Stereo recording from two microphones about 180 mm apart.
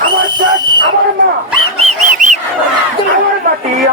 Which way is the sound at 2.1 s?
45° right (ahead or behind).